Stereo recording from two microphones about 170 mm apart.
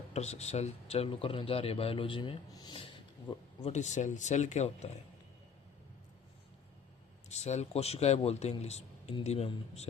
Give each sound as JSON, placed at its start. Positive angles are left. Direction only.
{"t": 0.1, "sound": "speech", "side_deg": 40}
{"t": 7.3, "sound": "speech", "side_deg": 40}